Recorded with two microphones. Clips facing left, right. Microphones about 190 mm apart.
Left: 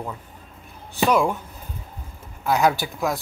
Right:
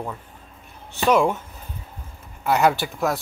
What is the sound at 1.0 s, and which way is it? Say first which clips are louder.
Speech: right 2 dB; centre (ahead or behind).